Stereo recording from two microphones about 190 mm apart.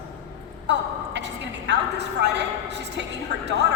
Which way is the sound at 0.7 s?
65° right (ahead or behind).